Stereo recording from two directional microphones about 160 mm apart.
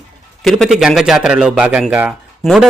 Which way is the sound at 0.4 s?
Centre (ahead or behind).